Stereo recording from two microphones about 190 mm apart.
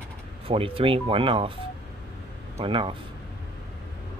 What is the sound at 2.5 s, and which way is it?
Speech, 25° right (ahead or behind).